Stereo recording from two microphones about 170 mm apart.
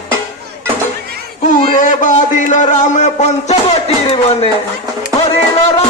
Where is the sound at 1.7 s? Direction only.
50° left (ahead or behind).